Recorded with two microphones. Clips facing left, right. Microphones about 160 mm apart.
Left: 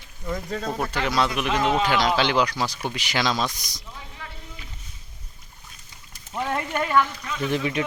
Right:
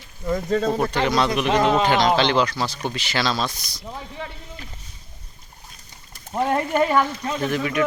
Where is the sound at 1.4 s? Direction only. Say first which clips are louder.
Right 4 dB; 40° right (ahead or behind).